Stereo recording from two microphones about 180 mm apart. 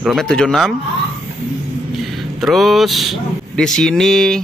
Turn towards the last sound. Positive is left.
turn(degrees=5)  # may be behind; listen again after turning